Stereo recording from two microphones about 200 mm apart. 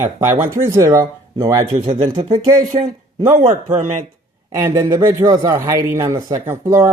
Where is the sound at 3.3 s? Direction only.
40° right (ahead or behind).